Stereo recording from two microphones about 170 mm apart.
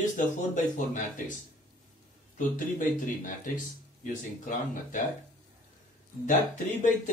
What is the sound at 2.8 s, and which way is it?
Speech, 50° left (ahead or behind).